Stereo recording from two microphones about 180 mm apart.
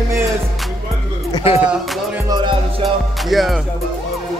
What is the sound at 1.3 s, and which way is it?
Music, 35° left (ahead or behind).